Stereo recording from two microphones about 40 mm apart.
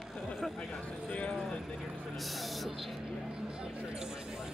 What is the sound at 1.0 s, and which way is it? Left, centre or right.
Speech, left.